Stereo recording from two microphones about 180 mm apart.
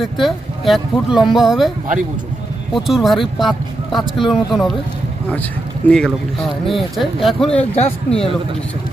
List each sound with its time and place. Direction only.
0.0 s speech: centre (ahead or behind)
2.7 s speech: centre (ahead or behind)
5.8 s speech: 10° left (ahead or behind)
7.6 s speech: 35° left (ahead or behind)